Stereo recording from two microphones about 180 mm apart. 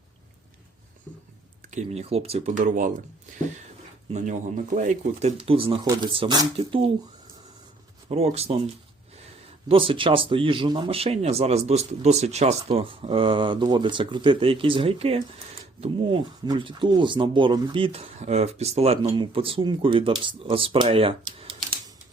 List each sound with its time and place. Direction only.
1.7 s speech: 35° right (ahead or behind)
4.1 s speech: 40° right (ahead or behind)
5.4 s speech: 30° right (ahead or behind)
8.1 s speech: 35° right (ahead or behind)
9.6 s speech: 30° right (ahead or behind)